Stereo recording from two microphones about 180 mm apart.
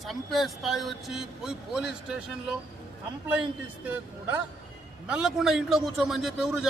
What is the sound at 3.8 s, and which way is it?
A man's voice, 10° right (ahead or behind).